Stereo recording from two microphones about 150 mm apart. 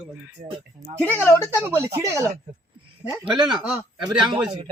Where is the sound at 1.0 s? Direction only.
15° right (ahead or behind).